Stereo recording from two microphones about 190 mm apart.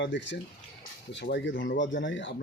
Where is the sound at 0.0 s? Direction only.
70° left (ahead or behind).